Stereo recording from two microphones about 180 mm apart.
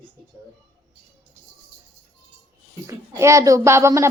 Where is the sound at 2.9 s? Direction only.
15° right (ahead or behind).